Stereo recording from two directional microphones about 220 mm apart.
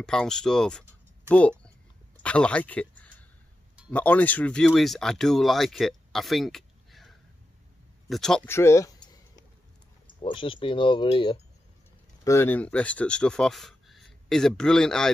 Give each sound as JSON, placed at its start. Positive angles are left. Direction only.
{"t": 0.0, "sound": "speech", "side_deg": 5}
{"t": 2.2, "sound": "a sound", "side_deg": 5}
{"t": 3.9, "sound": "speech", "side_deg": 5}
{"t": 12.3, "sound": "speech", "side_deg": 10}